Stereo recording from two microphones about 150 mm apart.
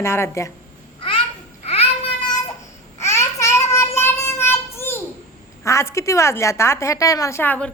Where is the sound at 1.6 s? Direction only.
40° left (ahead or behind).